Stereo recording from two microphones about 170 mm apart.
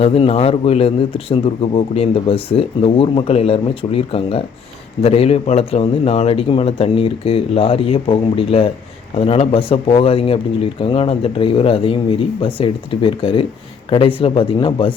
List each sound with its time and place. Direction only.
0.0 s speech: 35° left (ahead or behind)